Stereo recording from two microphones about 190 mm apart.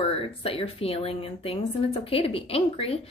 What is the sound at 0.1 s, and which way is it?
A woman's voice, 30° left (ahead or behind).